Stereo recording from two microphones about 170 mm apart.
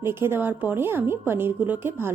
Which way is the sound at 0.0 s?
15° right (ahead or behind).